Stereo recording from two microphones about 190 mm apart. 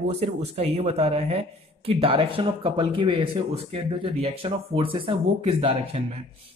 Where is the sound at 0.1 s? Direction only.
35° right (ahead or behind).